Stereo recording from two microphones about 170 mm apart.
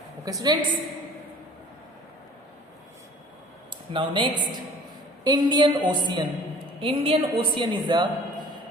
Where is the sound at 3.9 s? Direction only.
30° right (ahead or behind).